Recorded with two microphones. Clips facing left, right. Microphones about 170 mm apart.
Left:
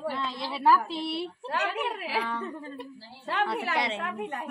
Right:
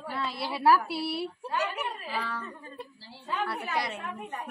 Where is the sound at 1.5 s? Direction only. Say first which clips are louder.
Left 3 dB; 90° left.